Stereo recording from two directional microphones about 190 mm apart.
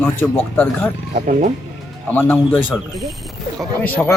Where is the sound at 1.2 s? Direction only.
40° right (ahead or behind).